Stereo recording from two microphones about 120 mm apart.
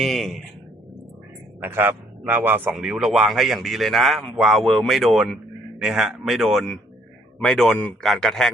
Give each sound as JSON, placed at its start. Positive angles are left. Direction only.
{"t": 0.0, "sound": "speech", "side_deg": 0}
{"t": 1.6, "sound": "a man's voice", "side_deg": -15}